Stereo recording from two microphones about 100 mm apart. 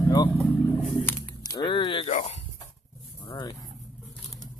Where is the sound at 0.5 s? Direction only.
20° left (ahead or behind).